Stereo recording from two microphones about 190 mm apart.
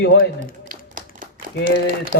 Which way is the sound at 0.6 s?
45° right (ahead or behind).